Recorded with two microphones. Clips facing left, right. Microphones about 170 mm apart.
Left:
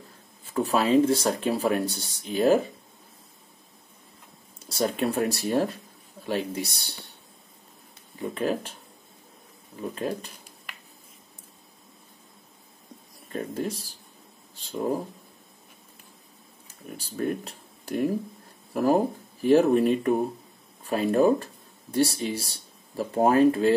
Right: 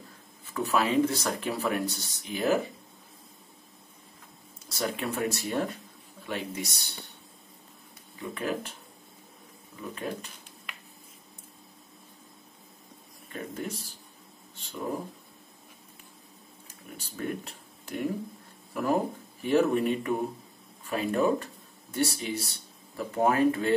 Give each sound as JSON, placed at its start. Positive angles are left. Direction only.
{"t": 0.6, "sound": "speech", "side_deg": 30}
{"t": 4.6, "sound": "speech", "side_deg": 35}
{"t": 8.2, "sound": "speech", "side_deg": 30}
{"t": 9.8, "sound": "speech", "side_deg": 35}
{"t": 13.3, "sound": "speech", "side_deg": 30}
{"t": 16.9, "sound": "speech", "side_deg": 35}